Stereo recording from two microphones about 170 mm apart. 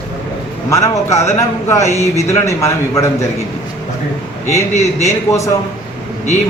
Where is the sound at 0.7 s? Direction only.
15° left (ahead or behind).